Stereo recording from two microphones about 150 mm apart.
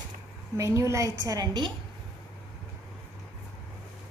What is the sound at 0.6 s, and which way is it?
A woman's voice, 20° right (ahead or behind).